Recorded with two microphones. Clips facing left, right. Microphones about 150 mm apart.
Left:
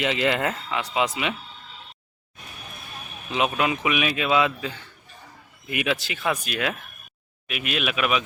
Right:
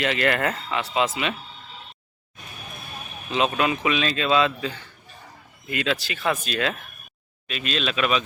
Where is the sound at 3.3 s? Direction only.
15° left (ahead or behind).